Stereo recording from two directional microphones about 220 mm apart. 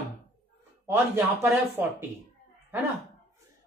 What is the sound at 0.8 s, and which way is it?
Speech, 10° right (ahead or behind).